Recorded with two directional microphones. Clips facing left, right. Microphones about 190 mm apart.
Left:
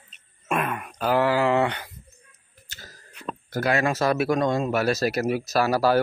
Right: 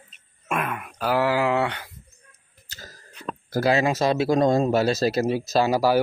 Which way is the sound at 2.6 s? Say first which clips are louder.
Right 3 dB; 40° right (ahead or behind).